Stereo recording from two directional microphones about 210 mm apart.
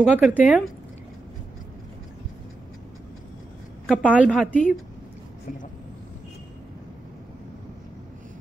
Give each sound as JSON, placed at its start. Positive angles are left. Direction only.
{"t": 0.0, "sound": "a woman's voice", "side_deg": -5}
{"t": 3.8, "sound": "a woman's voice", "side_deg": -5}